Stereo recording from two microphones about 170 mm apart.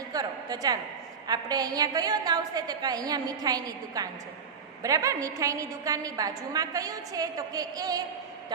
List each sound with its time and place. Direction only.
0.1 s a woman's voice: 20° right (ahead or behind)